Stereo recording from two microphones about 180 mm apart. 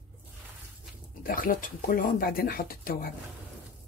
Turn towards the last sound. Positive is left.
turn(degrees=55)  # may be behind; listen again after turning